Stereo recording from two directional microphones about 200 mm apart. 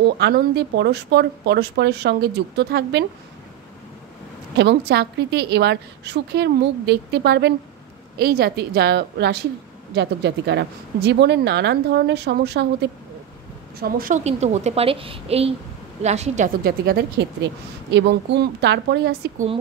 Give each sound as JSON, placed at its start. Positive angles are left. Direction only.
{"t": 0.2, "sound": "a woman's voice", "side_deg": -55}
{"t": 4.6, "sound": "a woman's voice", "side_deg": -60}
{"t": 13.7, "sound": "a woman's voice", "side_deg": -45}
{"t": 16.6, "sound": "a woman's voice", "side_deg": -50}
{"t": 19.3, "sound": "a woman's voice", "side_deg": -30}